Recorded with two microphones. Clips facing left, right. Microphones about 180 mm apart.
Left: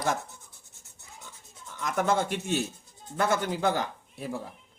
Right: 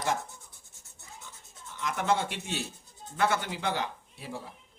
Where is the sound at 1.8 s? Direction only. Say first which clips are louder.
Left 2 dB; 45° left (ahead or behind).